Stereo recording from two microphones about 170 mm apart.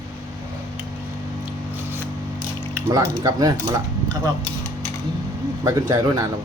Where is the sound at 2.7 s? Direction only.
20° right (ahead or behind).